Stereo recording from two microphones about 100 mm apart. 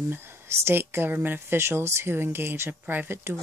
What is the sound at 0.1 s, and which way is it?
Speech, 25° right (ahead or behind).